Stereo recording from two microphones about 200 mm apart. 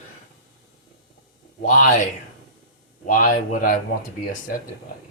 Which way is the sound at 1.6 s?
40° left (ahead or behind).